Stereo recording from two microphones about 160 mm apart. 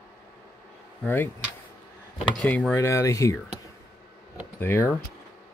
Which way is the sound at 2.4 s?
5° left (ahead or behind).